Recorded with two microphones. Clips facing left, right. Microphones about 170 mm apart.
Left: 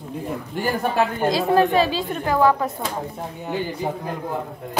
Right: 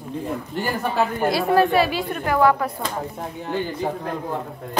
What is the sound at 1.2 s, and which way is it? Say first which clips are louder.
Speech: even; 20° left (ahead or behind).